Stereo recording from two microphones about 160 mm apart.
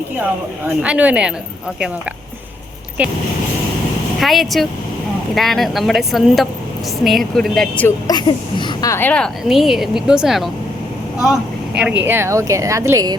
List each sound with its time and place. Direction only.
0.8 s speech: 10° right (ahead or behind)
3.0 s speech: 10° right (ahead or behind)
4.2 s a woman's voice: centre (ahead or behind)
7.9 s a woman's voice: 25° left (ahead or behind); by 10.5 s centre (ahead or behind)
11.8 s speech: 10° right (ahead or behind)